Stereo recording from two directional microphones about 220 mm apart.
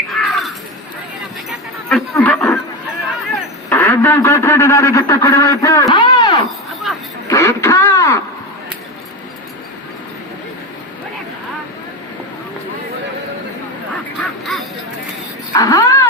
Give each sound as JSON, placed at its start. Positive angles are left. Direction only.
{"t": 0.1, "sound": "crow", "side_deg": 0}
{"t": 1.9, "sound": "a sound", "side_deg": 5}
{"t": 3.7, "sound": "a man's voice", "side_deg": 10}
{"t": 5.9, "sound": "a sound", "side_deg": 20}
{"t": 7.3, "sound": "radio", "side_deg": 15}
{"t": 14.2, "sound": "honk", "side_deg": 0}
{"t": 15.5, "sound": "music", "side_deg": 15}